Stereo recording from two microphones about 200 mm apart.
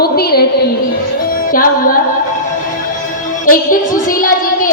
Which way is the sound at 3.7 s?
45° left (ahead or behind).